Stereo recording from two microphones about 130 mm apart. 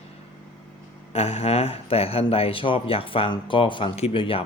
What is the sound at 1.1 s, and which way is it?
Speech, 55° left (ahead or behind).